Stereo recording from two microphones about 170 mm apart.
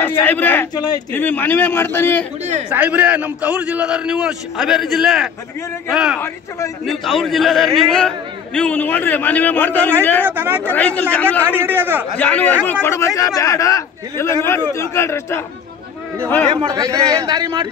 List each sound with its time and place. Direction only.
0.0 s speech: 10° left (ahead or behind)
0.7 s a man's voice: 20° left (ahead or behind)
1.1 s a man's voice: 10° left (ahead or behind)
2.7 s a man's voice: 10° right (ahead or behind); by 9.9 s 10° left (ahead or behind)
10.2 s a man's voice: 10° right (ahead or behind)
10.7 s a man's voice: 10° left (ahead or behind)
11.6 s a man's voice: 10° right (ahead or behind)
12.2 s a man's voice: 10° left (ahead or behind)
16.6 s a man's voice: 20° right (ahead or behind)